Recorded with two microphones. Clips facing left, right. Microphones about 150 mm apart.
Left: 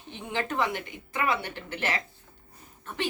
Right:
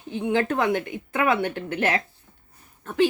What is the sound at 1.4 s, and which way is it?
Speech, 55° right (ahead or behind).